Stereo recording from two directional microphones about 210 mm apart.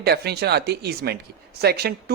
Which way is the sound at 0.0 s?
50° right (ahead or behind).